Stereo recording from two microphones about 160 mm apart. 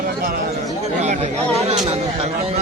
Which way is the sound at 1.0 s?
40° right (ahead or behind).